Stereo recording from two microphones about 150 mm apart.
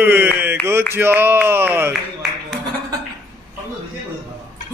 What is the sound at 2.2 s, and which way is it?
Music, 5° right (ahead or behind).